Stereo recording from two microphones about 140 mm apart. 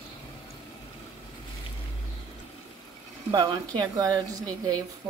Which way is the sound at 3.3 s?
30° right (ahead or behind).